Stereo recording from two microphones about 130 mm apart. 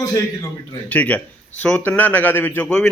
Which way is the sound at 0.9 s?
10° left (ahead or behind).